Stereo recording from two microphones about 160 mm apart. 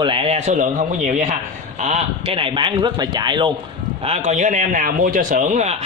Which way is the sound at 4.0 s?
40° right (ahead or behind).